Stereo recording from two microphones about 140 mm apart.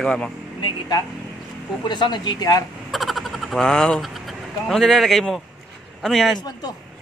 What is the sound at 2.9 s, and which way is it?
Vehicle, centre (ahead or behind).